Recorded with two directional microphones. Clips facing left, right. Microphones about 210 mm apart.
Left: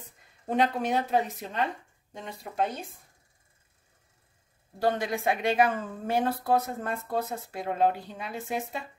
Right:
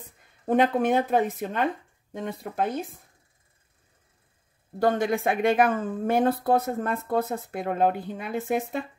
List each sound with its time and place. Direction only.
0.5 s a woman's voice: 50° right (ahead or behind)
4.7 s a woman's voice: 55° right (ahead or behind)